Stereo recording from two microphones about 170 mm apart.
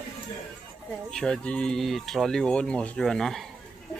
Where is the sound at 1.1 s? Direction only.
5° left (ahead or behind).